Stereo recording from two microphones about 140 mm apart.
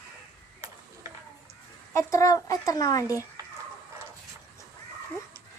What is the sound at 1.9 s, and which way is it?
Speech, 25° left (ahead or behind).